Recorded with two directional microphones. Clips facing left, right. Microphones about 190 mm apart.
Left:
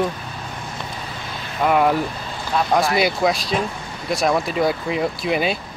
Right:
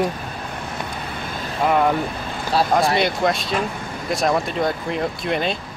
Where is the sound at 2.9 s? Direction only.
5° left (ahead or behind).